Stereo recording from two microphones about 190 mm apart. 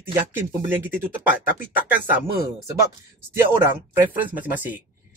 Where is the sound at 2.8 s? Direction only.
15° right (ahead or behind).